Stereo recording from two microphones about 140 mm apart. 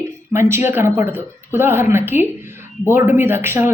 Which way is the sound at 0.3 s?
15° right (ahead or behind).